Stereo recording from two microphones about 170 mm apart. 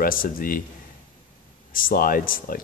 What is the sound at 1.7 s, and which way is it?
Speech, 55° left (ahead or behind).